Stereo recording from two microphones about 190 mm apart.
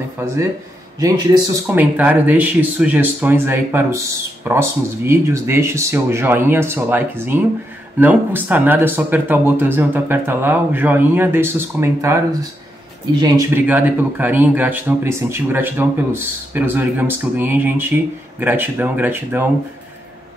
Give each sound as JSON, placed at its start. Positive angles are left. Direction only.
{"t": 0.2, "sound": "a man's voice", "side_deg": -10}
{"t": 1.7, "sound": "speech", "side_deg": -10}